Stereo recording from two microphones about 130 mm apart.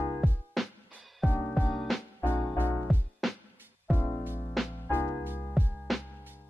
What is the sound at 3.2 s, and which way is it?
Music, centre (ahead or behind).